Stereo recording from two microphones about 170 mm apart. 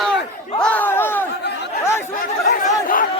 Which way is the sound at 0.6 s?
10° left (ahead or behind).